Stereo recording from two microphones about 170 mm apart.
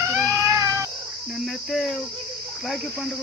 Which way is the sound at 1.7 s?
Centre (ahead or behind).